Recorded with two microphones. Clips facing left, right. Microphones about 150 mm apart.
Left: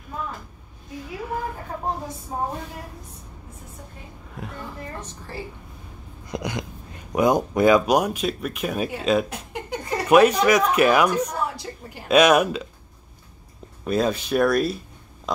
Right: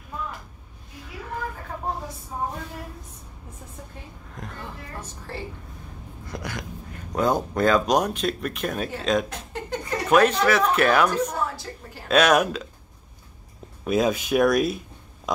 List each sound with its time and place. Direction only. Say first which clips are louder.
4.4 s speech: left 3 dB; 5° left (ahead or behind)
6.2 s hiccup: left 5 dB; 20° left (ahead or behind)
7.1 s speech: left 3 dB; 15° left (ahead or behind)
13.8 s speech: even; 5° right (ahead or behind)